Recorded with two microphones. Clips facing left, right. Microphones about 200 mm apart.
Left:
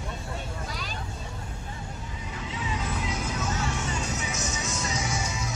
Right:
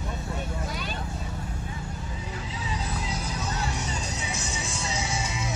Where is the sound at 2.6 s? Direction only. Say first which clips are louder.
Left 2 dB; 35° right (ahead or behind).